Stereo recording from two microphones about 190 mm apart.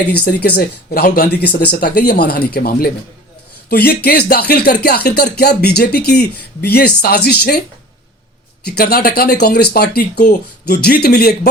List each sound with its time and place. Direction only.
0.3 s speech: 55° left (ahead or behind)
8.6 s speech: 55° left (ahead or behind)